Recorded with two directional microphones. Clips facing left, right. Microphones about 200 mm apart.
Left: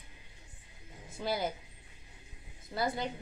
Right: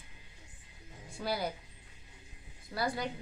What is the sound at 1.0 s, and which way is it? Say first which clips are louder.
Speech: left 1 dB; 20° left (ahead or behind).